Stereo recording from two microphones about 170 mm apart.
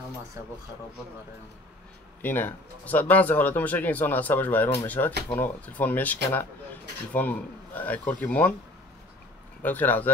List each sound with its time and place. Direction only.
2.2 s speech: 10° left (ahead or behind)
9.6 s speech: 10° left (ahead or behind)